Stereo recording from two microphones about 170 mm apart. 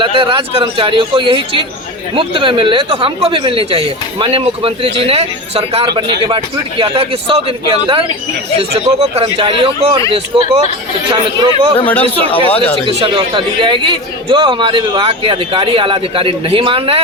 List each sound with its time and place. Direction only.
0.0 s speech: 30° right (ahead or behind)
9.1 s speech: 35° right (ahead or behind)
11.9 s speech: 10° left (ahead or behind)
12.3 s speech: 35° left (ahead or behind)
12.8 s speech: 30° right (ahead or behind)